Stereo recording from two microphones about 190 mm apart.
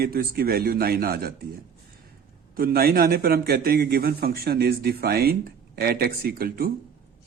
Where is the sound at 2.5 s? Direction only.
50° right (ahead or behind).